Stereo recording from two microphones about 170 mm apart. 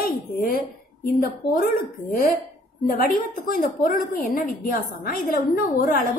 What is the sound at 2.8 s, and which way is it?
A woman's voice, 55° left (ahead or behind).